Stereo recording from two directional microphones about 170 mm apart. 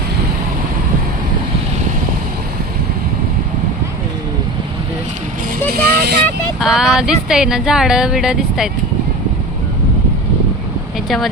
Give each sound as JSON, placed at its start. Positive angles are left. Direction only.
{"t": 5.7, "sound": "vehicle", "side_deg": -65}
{"t": 6.6, "sound": "speech", "side_deg": 0}